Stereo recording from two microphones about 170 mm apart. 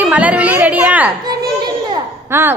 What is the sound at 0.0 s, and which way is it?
A woman's voice, 10° right (ahead or behind).